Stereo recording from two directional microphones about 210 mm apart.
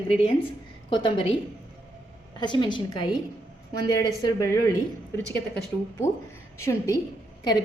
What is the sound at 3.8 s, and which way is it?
Speech, 20° left (ahead or behind).